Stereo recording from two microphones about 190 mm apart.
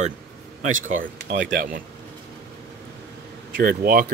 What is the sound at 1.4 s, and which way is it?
Speech, 45° right (ahead or behind).